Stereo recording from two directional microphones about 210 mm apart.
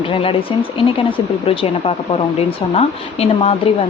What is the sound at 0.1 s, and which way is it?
Speech, 25° left (ahead or behind).